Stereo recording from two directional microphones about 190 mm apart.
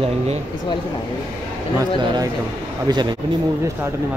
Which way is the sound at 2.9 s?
20° right (ahead or behind).